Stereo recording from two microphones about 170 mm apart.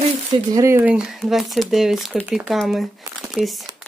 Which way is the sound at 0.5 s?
15° right (ahead or behind).